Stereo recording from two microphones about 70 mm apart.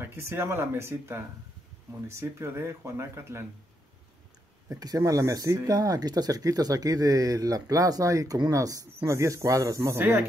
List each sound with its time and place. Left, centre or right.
0.0 s speech: right
4.6 s speech: right